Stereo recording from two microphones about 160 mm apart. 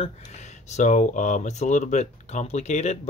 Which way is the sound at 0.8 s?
50° left (ahead or behind).